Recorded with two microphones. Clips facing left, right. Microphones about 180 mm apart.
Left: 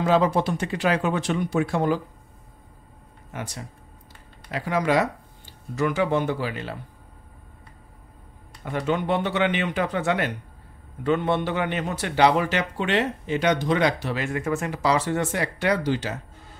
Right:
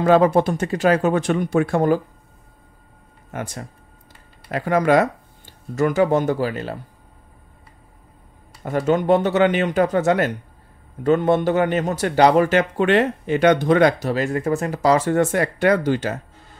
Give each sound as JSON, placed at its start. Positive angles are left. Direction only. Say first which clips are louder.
{"t": 0.0, "sound": "a man's voice", "louder": "right 6 dB", "side_deg": -55}
{"t": 3.3, "sound": "a man's voice", "louder": "right 5 dB", "side_deg": -50}
{"t": 8.6, "sound": "a man's voice", "louder": "right 7 dB", "side_deg": -45}